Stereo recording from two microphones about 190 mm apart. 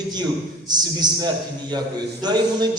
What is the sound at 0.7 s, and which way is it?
A man's voice, 20° right (ahead or behind).